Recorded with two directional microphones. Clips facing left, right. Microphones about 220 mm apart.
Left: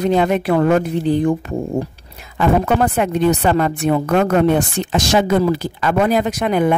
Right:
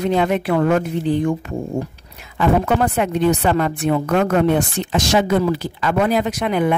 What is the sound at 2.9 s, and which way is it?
Speech, 40° left (ahead or behind).